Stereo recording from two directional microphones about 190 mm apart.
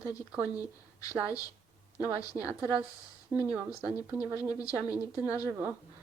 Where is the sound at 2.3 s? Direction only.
10° right (ahead or behind).